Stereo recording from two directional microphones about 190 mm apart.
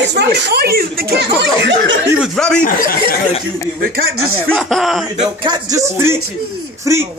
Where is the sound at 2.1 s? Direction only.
Centre (ahead or behind).